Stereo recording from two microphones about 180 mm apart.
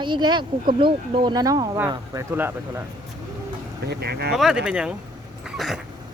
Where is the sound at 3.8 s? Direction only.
65° right (ahead or behind).